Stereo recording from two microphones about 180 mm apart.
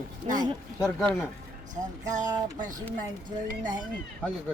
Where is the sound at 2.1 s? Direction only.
45° right (ahead or behind).